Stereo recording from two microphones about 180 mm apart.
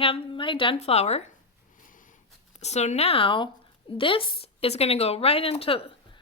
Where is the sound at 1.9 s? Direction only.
45° left (ahead or behind).